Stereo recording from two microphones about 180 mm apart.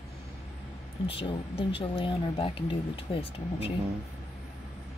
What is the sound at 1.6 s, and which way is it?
Speech, 30° left (ahead or behind).